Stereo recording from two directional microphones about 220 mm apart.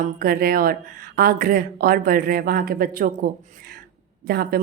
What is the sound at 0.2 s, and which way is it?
A woman's voice, 40° right (ahead or behind).